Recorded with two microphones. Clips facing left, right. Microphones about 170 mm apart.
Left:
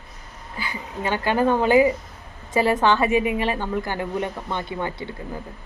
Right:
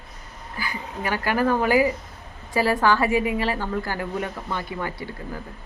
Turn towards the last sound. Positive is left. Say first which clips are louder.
# left 2 dB
turn(degrees=25)  # may be behind; listen again after turning